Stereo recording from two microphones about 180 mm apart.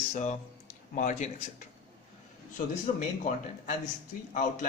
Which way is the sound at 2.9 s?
35° left (ahead or behind).